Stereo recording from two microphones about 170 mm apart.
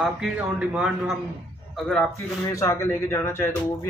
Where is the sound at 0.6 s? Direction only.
5° right (ahead or behind).